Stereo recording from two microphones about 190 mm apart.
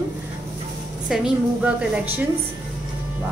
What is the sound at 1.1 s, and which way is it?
A woman's voice, 5° right (ahead or behind).